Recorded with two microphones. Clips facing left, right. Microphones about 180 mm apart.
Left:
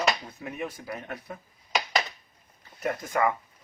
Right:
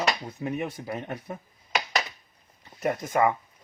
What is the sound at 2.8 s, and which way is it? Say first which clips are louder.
Speech: right 3 dB; 20° right (ahead or behind).